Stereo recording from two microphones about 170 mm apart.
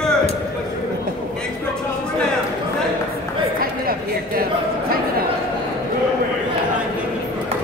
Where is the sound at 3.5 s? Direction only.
60° right (ahead or behind).